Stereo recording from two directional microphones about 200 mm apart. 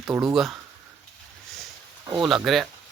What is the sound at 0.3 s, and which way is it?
Speech, centre (ahead or behind).